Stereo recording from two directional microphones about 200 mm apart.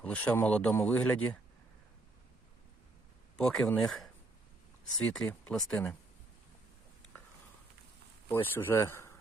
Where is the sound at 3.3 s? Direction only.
5° left (ahead or behind).